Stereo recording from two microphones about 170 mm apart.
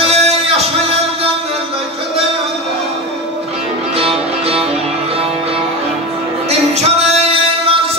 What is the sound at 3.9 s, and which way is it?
Music, 35° right (ahead or behind).